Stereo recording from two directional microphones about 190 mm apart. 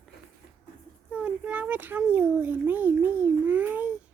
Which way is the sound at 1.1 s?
5° right (ahead or behind).